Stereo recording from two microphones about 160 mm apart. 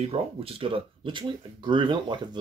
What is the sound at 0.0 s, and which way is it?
Speech, 35° right (ahead or behind).